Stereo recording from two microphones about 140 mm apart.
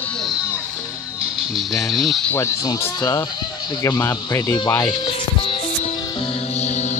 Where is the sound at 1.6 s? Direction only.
Centre (ahead or behind).